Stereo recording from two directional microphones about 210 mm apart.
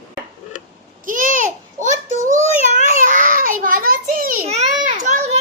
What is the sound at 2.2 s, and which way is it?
Child singing, 35° right (ahead or behind).